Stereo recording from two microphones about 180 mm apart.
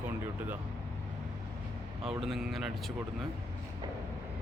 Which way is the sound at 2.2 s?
Centre (ahead or behind).